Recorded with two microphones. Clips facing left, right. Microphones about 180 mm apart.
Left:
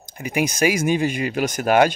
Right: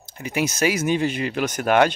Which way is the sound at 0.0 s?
15° left (ahead or behind).